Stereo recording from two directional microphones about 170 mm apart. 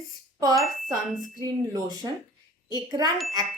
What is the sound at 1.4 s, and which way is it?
Speech, 20° right (ahead or behind).